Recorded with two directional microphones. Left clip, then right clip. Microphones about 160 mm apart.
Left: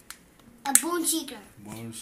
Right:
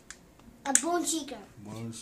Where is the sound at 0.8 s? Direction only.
20° left (ahead or behind).